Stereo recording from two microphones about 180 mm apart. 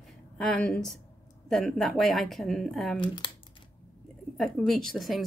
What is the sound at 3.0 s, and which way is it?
Speech, 25° left (ahead or behind).